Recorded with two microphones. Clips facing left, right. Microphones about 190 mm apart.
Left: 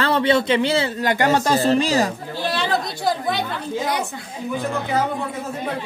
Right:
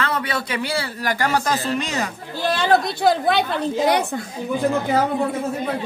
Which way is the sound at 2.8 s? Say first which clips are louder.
Right 4 dB; 65° right (ahead or behind).